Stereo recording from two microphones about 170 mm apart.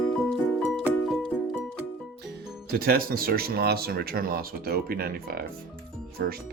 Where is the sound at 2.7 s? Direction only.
65° right (ahead or behind).